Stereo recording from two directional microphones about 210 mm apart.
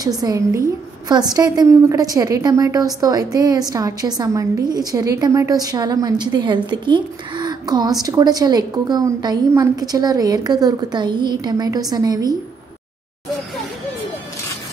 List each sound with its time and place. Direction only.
0.2 s a woman's voice: 15° right (ahead or behind)